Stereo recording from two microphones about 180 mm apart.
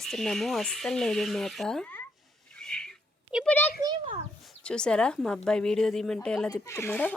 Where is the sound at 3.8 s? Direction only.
25° right (ahead or behind).